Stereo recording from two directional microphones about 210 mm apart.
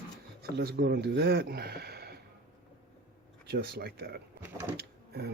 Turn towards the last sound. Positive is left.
turn(degrees=-50)  # may be behind; listen again after turning